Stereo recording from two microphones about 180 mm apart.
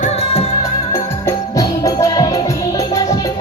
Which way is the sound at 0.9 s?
20° left (ahead or behind).